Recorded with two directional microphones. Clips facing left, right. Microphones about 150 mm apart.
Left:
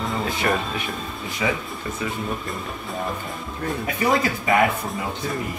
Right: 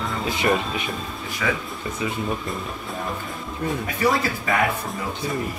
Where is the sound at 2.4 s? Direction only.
Centre (ahead or behind).